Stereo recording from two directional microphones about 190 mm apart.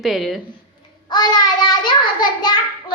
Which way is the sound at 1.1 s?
20° left (ahead or behind).